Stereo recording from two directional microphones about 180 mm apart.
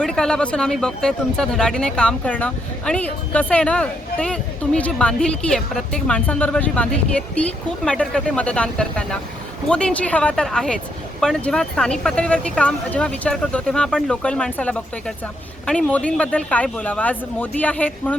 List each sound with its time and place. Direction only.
0.0 s speech: 5° left (ahead or behind)